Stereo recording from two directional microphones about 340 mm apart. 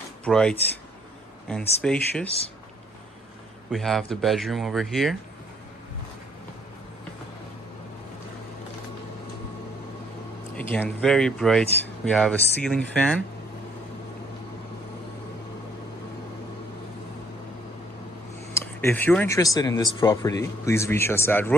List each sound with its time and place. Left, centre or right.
0.2 s speech: centre
2.2 s speech: centre
3.7 s speech: centre
10.5 s speech: centre
18.5 s speech: centre